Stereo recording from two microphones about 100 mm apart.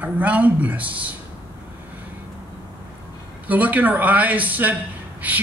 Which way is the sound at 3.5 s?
15° right (ahead or behind).